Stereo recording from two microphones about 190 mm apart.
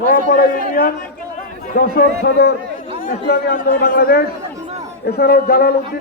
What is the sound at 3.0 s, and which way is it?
A man's voice, 50° left (ahead or behind).